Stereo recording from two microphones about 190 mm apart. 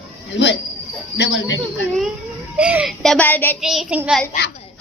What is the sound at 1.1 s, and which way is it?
Speech, 70° left (ahead or behind).